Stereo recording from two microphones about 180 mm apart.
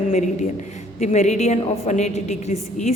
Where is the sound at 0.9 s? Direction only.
40° left (ahead or behind).